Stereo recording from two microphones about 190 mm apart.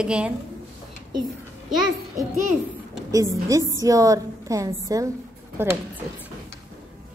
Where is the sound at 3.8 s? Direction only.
15° right (ahead or behind).